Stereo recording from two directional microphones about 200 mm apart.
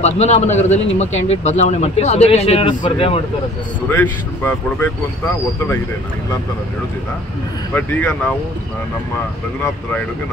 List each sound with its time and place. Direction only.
0.0 s speech: 35° left (ahead or behind)
3.9 s speech: 10° left (ahead or behind)
7.7 s speech: 10° left (ahead or behind)